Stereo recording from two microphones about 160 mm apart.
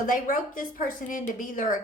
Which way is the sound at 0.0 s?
55° left (ahead or behind).